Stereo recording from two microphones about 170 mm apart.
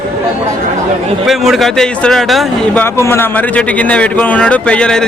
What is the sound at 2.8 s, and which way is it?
Speech, 15° left (ahead or behind).